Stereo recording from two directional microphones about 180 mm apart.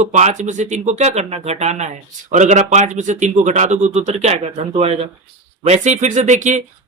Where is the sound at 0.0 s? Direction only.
40° right (ahead or behind).